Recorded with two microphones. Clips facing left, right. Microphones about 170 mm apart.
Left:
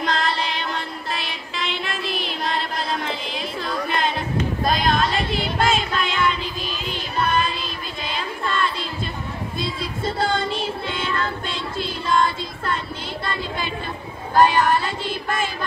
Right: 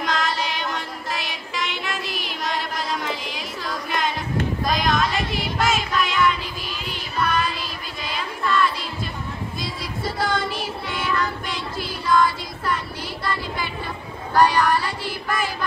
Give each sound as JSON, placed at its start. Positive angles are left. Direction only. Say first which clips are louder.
{"t": 0.0, "sound": "music", "louder": "left 1 dB", "side_deg": 30}
{"t": 4.7, "sound": "child singing", "louder": "even", "side_deg": 30}
{"t": 8.0, "sound": "a sound", "louder": "even", "side_deg": 25}
{"t": 9.6, "sound": "child singing", "louder": "left 5 dB", "side_deg": 25}
{"t": 13.2, "sound": "a sound", "louder": "right 1 dB", "side_deg": 25}
{"t": 14.4, "sound": "child singing", "louder": "left 1 dB", "side_deg": 20}